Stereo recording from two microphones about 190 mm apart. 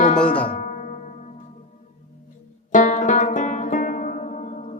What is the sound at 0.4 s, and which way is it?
Music, 40° left (ahead or behind).